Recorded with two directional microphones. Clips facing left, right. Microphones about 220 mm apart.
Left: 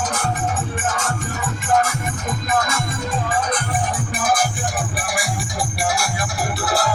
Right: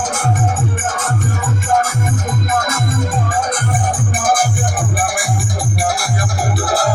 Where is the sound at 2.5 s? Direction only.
50° right (ahead or behind).